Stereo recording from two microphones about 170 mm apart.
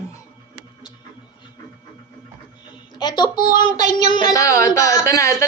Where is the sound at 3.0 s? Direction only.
25° left (ahead or behind).